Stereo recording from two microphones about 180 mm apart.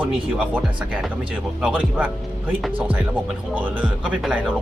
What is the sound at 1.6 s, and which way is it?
Speech, 10° right (ahead or behind).